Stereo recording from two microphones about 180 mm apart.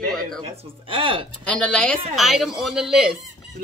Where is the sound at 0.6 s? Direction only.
30° right (ahead or behind).